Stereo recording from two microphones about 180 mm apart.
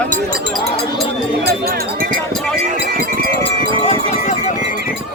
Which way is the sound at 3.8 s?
40° left (ahead or behind).